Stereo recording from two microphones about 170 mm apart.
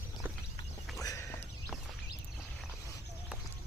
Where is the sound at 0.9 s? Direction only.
20° left (ahead or behind).